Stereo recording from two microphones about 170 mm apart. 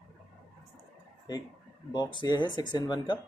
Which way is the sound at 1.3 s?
25° left (ahead or behind).